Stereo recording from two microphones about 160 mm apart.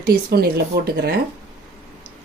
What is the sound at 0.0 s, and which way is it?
Speech, 75° right (ahead or behind).